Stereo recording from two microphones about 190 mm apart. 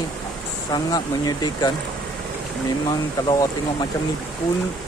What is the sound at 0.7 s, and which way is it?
Speech, 20° left (ahead or behind).